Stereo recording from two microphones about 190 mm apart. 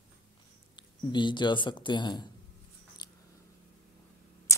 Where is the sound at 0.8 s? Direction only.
25° left (ahead or behind).